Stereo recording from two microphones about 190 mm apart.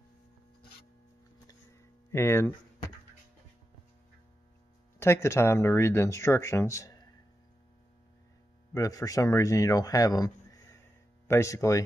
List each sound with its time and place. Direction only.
2.0 s speech: 15° left (ahead or behind)
4.9 s speech: 15° left (ahead or behind)
8.7 s speech: 20° left (ahead or behind)